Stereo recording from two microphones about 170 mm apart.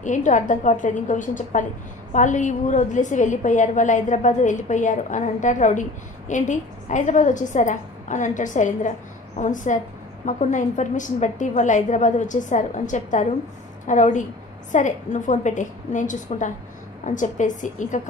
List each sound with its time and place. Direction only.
0.0 s a woman's voice: 45° left (ahead or behind)